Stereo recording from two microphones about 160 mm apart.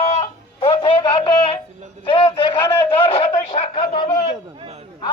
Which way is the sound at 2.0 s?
35° left (ahead or behind).